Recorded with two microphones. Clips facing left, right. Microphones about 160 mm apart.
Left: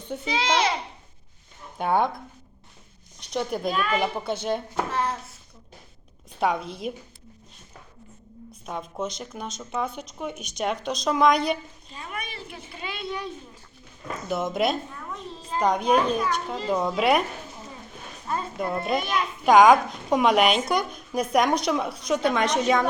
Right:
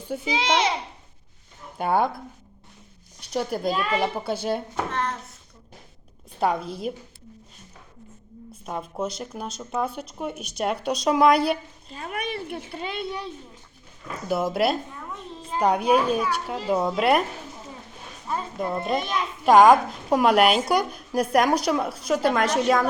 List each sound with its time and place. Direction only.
0.3 s a child's voice: 20° right (ahead or behind)
1.8 s a woman's voice: 5° right (ahead or behind)
3.7 s a child's voice: 25° right (ahead or behind)
4.0 s a woman's voice: 5° right (ahead or behind)
6.4 s a woman's voice: centre (ahead or behind)
8.6 s a woman's voice: 5° right (ahead or behind)
11.9 s speech: 55° right (ahead or behind)
14.3 s a woman's voice: 5° right (ahead or behind)
18.3 s a woman's voice: centre (ahead or behind)